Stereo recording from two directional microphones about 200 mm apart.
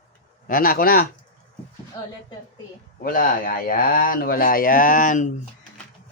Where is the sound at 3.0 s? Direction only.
45° left (ahead or behind).